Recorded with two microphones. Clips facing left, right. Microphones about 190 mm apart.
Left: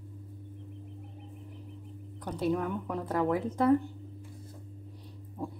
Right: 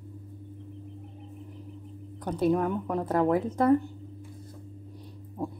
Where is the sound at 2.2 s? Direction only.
45° right (ahead or behind).